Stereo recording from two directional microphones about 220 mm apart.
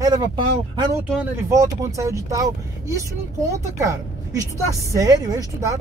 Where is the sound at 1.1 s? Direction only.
10° right (ahead or behind).